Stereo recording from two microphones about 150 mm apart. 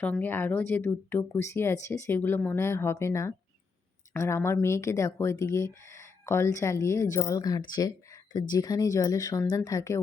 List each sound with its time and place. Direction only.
0.0 s speech: 10° left (ahead or behind)